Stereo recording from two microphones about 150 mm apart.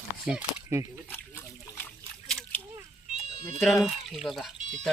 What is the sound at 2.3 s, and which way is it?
Slosh, 5° left (ahead or behind).